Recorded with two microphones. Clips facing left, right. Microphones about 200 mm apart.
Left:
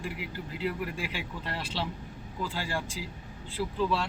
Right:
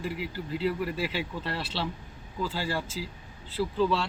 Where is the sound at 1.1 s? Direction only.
10° left (ahead or behind).